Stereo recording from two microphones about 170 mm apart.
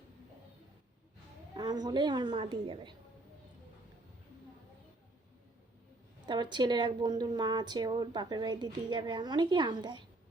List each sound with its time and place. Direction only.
1.5 s speech: 25° right (ahead or behind)
6.2 s speech: 25° right (ahead or behind)